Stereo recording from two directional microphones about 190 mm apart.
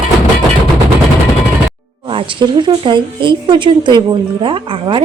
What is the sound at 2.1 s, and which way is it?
Speech, 25° right (ahead or behind).